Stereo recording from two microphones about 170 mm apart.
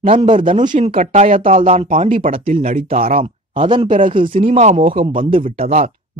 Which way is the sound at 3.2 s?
30° right (ahead or behind).